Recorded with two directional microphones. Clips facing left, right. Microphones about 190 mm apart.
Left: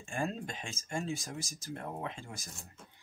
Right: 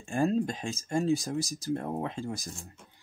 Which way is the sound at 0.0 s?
35° right (ahead or behind).